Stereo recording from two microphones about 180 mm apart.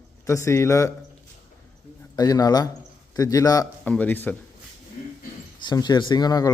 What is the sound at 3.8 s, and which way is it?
Speech, 10° left (ahead or behind).